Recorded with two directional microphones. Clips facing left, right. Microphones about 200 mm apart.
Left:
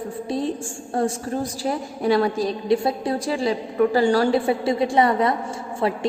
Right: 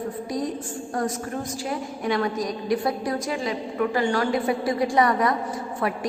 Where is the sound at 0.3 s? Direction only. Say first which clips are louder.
Left 6 dB; 30° left (ahead or behind).